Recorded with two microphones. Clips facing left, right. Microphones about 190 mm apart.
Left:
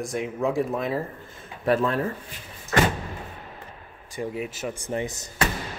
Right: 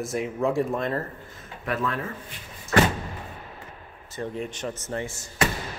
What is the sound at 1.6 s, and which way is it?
Speech, 30° left (ahead or behind).